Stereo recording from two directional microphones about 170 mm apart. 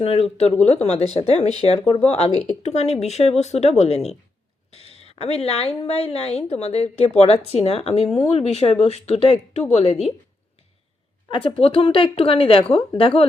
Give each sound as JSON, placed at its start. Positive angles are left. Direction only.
{"t": 0.0, "sound": "speech", "side_deg": 35}
{"t": 11.3, "sound": "speech", "side_deg": 35}